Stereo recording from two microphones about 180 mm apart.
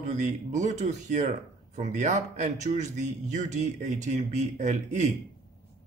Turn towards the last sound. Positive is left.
turn(degrees=-40)  # may be behind; listen again after turning